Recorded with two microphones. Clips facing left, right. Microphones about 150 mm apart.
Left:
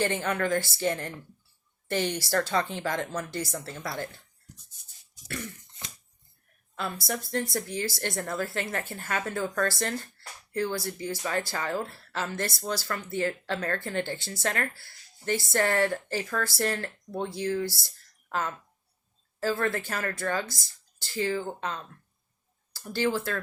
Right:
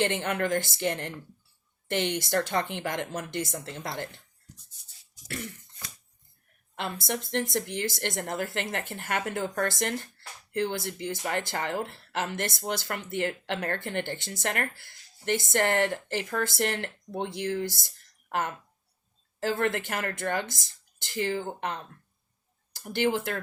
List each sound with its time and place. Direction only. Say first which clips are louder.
0.0 s speech: even; 20° right (ahead or behind)
6.9 s speech: right 1 dB; 20° right (ahead or behind)
19.4 s speech: even; 20° right (ahead or behind)
21.6 s speech: right 1 dB; 60° right (ahead or behind)
22.7 s speech: right 1 dB; 20° right (ahead or behind)